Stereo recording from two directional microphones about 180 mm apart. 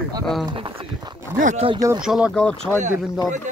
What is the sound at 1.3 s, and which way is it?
Speech, 45° right (ahead or behind).